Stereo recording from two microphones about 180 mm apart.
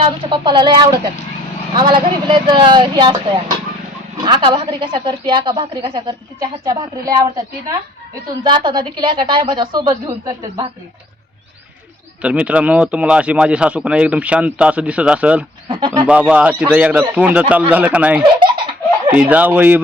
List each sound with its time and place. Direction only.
0.0 s a woman's voice: 25° right (ahead or behind)
12.2 s a man's voice: 5° right (ahead or behind)
18.2 s baby laughter: 25° right (ahead or behind)
19.1 s a man's voice: 10° right (ahead or behind)